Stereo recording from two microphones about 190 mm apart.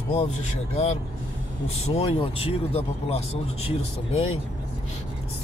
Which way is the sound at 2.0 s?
30° left (ahead or behind).